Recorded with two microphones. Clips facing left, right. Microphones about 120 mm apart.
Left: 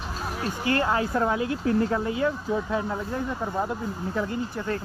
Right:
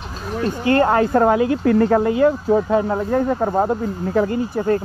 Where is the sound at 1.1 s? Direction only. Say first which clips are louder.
Right 9 dB; 65° right (ahead or behind).